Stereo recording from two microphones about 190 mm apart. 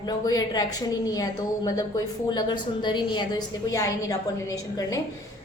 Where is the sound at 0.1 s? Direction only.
20° left (ahead or behind).